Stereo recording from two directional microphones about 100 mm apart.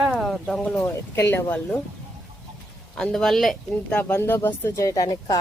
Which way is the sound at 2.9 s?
5° left (ahead or behind).